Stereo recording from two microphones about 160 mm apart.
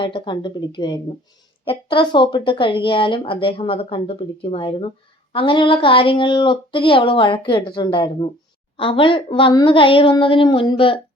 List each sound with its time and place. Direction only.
0.0 s speech: 30° left (ahead or behind)